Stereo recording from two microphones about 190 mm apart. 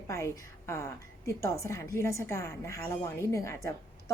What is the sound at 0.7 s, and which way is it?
A woman's voice, 15° left (ahead or behind).